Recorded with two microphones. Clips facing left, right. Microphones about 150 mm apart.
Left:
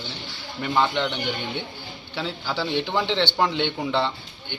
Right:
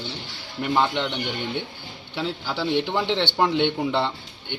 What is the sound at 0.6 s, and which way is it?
Speech, 10° right (ahead or behind).